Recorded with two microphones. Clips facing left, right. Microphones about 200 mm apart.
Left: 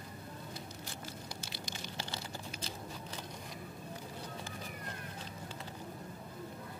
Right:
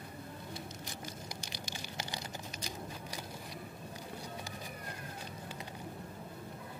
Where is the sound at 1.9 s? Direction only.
15° right (ahead or behind).